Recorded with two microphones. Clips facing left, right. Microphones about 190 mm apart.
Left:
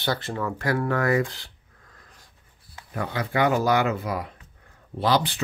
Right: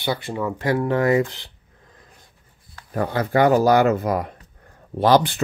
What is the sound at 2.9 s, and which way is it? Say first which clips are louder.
Speech: right 6 dB; 40° right (ahead or behind).